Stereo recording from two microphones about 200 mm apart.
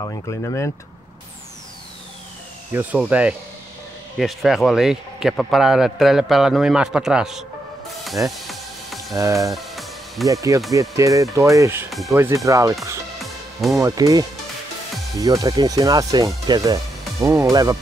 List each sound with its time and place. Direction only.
0.0 s speech: 15° left (ahead or behind)
2.7 s a man's voice: 10° right (ahead or behind)
8.0 s music: centre (ahead or behind)
9.1 s speech: 15° right (ahead or behind)
9.5 s music: centre (ahead or behind)
10.2 s speech: 15° right (ahead or behind)
11.9 s speech: centre (ahead or behind)
12.2 s speech: 15° right (ahead or behind)